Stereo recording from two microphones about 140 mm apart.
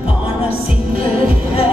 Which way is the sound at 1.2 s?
90° right.